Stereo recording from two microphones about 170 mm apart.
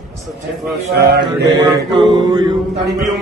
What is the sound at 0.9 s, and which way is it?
Speech, 70° right (ahead or behind).